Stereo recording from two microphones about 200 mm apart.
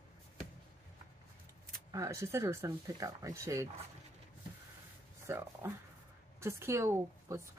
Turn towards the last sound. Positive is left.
turn(degrees=-15)  # may be behind; listen again after turning